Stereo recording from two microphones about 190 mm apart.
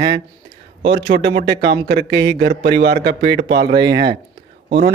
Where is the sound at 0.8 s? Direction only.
60° right (ahead or behind).